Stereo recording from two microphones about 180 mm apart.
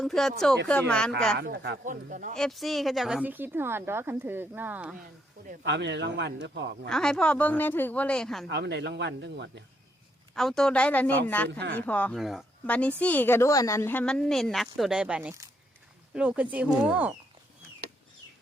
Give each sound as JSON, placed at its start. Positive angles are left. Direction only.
{"t": 0.0, "sound": "speech", "side_deg": 0}
{"t": 1.4, "sound": "speech", "side_deg": -65}
{"t": 1.8, "sound": "speech", "side_deg": -45}
{"t": 2.3, "sound": "a woman's voice", "side_deg": 0}
{"t": 5.6, "sound": "speech", "side_deg": -75}
{"t": 6.8, "sound": "speech", "side_deg": 5}
{"t": 8.4, "sound": "speech", "side_deg": -70}
{"t": 10.3, "sound": "a woman's voice", "side_deg": 0}